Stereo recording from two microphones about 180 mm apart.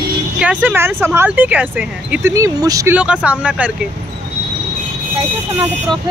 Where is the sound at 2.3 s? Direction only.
20° right (ahead or behind).